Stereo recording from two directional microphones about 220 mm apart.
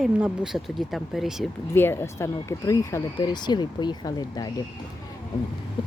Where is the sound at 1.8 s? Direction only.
10° left (ahead or behind).